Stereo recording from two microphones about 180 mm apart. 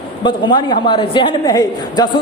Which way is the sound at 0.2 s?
25° left (ahead or behind).